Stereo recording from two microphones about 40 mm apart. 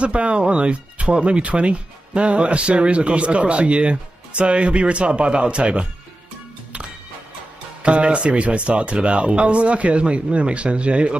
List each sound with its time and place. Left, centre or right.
0.0 s speech: right
7.8 s speech: right